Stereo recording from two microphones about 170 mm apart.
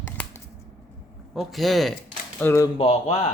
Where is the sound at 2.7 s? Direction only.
35° left (ahead or behind).